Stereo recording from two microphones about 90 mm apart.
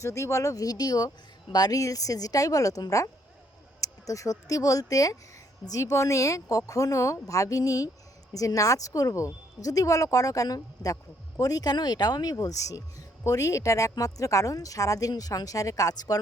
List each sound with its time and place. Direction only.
0.0 s speech: 35° left (ahead or behind)